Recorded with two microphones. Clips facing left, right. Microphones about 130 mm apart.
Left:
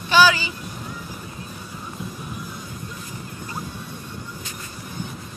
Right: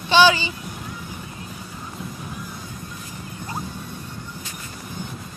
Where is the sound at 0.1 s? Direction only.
25° right (ahead or behind).